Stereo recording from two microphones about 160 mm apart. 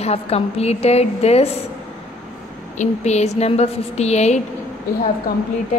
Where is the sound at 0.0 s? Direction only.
40° left (ahead or behind).